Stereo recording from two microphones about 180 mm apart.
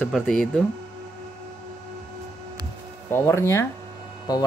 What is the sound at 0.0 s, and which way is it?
Speech, 5° left (ahead or behind).